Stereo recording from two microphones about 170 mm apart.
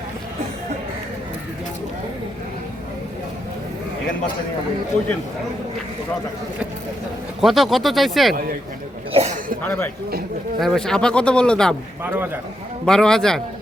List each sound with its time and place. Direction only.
7.4 s speech: centre (ahead or behind)
9.1 s a sound: 40° right (ahead or behind)
9.6 s speech: 10° left (ahead or behind)
12.0 s a man's voice: 10° right (ahead or behind)
12.8 s speech: 5° left (ahead or behind)